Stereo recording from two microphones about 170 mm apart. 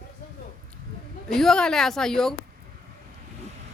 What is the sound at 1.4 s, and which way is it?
Speech, 5° left (ahead or behind).